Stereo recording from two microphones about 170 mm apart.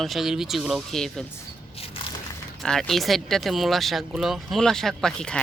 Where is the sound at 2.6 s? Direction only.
5° left (ahead or behind).